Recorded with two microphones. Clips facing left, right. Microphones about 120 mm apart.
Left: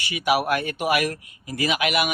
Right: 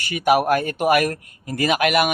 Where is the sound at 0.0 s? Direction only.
45° right (ahead or behind).